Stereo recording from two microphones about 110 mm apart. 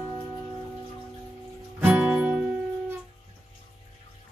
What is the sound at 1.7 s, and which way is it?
Music, 15° right (ahead or behind).